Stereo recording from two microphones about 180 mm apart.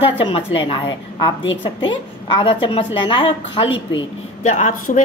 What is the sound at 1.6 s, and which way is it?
A woman's voice, 25° left (ahead or behind).